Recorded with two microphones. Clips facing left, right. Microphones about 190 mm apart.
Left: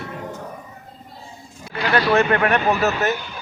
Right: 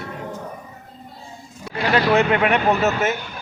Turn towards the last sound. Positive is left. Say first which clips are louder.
# right 1 dB
turn(degrees=-20)  # may be behind; listen again after turning